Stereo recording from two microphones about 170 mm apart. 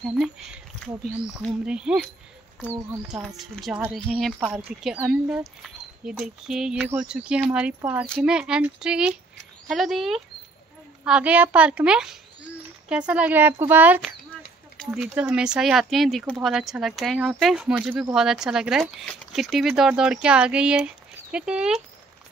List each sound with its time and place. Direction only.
0.0 s speech: 5° right (ahead or behind)
3.1 s speech: centre (ahead or behind)
15.1 s speech: 5° right (ahead or behind)